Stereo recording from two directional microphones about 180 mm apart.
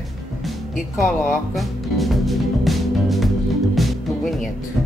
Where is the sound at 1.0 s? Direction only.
Centre (ahead or behind).